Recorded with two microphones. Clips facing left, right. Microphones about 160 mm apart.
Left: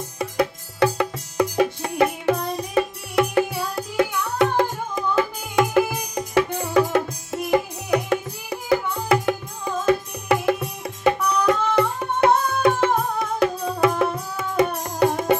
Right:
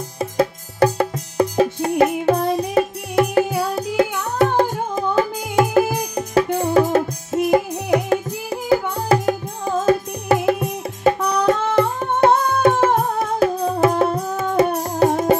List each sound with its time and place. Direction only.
0.7 s music: 35° right (ahead or behind)
3.4 s music: 25° right (ahead or behind)
4.2 s music: 40° right (ahead or behind)